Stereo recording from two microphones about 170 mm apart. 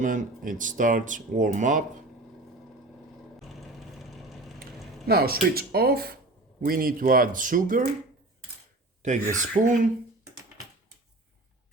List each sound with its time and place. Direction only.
0.0 s speech: 50° right (ahead or behind)
3.5 s vehicle: centre (ahead or behind)
5.0 s speech: 65° right (ahead or behind)
9.0 s speech: 45° right (ahead or behind)